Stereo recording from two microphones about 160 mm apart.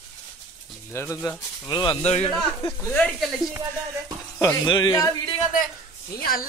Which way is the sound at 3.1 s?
5° right (ahead or behind).